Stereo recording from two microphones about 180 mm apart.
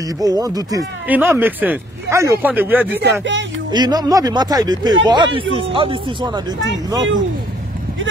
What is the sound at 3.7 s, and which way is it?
Speech, 25° right (ahead or behind).